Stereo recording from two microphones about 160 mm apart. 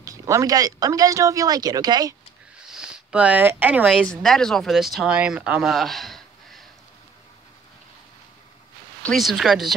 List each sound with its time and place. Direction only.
0.0 s speech: 20° right (ahead or behind)
2.7 s speech: 5° right (ahead or behind)
3.9 s speech: 5° left (ahead or behind)
9.0 s speech: centre (ahead or behind)